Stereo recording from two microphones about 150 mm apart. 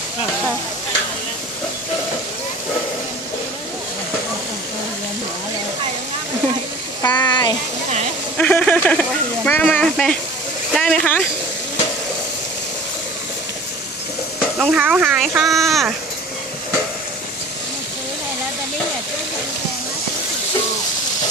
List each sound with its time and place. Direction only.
7.0 s a sound: 30° left (ahead or behind)
8.4 s a child's voice: 10° left (ahead or behind)
14.6 s a child's voice: 5° right (ahead or behind)